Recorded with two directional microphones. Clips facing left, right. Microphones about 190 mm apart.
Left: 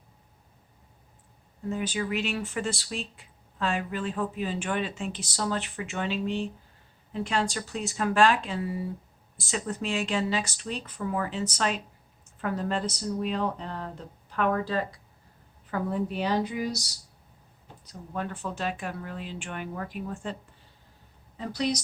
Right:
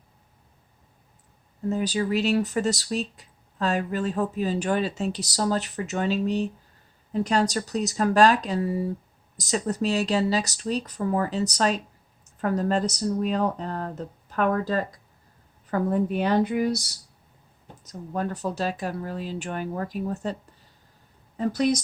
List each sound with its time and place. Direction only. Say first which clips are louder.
1.7 s speech: right 5 dB; 35° right (ahead or behind); by 16.9 s 55° right (ahead or behind)
17.8 s speech: right 5 dB; 40° right (ahead or behind)
21.3 s speech: right 6 dB; 45° right (ahead or behind)